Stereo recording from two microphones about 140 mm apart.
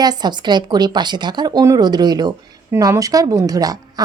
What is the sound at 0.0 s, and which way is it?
A woman's voice, 30° right (ahead or behind).